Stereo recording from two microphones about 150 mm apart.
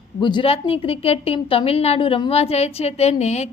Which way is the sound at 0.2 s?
30° left (ahead or behind).